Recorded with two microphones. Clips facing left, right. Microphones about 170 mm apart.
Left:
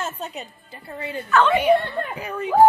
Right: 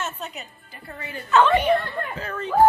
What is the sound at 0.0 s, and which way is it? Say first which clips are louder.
A woman's voice: left 2 dB; 35° left (ahead or behind).